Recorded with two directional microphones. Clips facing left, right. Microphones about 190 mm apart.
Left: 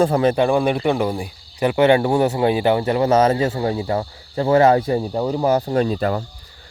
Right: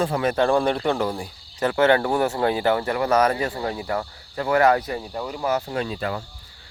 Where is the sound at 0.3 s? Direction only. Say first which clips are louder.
Left 3 dB; 15° left (ahead or behind).